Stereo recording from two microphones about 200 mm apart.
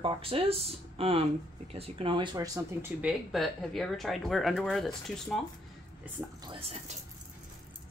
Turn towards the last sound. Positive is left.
turn(degrees=-30)  # may be behind; listen again after turning